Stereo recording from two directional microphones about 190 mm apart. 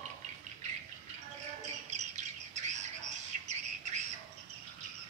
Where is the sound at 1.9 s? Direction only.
35° right (ahead or behind).